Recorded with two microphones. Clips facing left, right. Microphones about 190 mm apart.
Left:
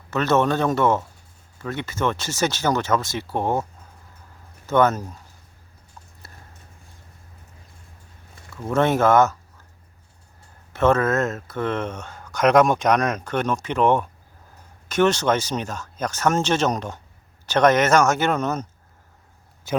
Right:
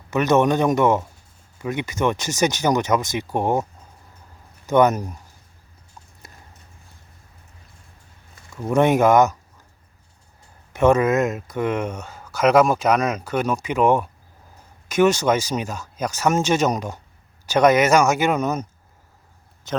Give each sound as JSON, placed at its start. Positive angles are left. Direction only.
{"t": 0.1, "sound": "speech", "side_deg": -15}
{"t": 8.6, "sound": "speech", "side_deg": -15}
{"t": 10.7, "sound": "speech", "side_deg": -15}